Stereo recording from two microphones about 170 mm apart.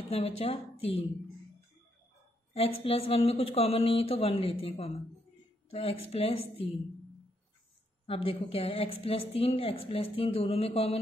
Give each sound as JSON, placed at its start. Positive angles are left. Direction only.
{"t": 0.1, "sound": "a woman's voice", "side_deg": 35}
{"t": 2.5, "sound": "a woman's voice", "side_deg": 35}
{"t": 8.1, "sound": "a woman's voice", "side_deg": 35}